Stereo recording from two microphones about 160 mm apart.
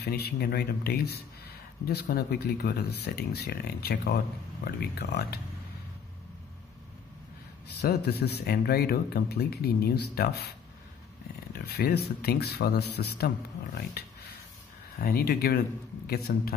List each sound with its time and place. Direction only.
0.0 s speech: 90° left
7.8 s speech: 85° left
11.5 s speech: 80° left
15.0 s speech: 70° left (ahead or behind)